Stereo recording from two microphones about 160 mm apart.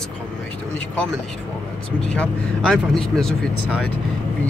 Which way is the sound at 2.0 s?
5° left (ahead or behind).